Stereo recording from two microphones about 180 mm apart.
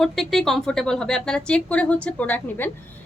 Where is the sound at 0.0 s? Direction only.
Centre (ahead or behind).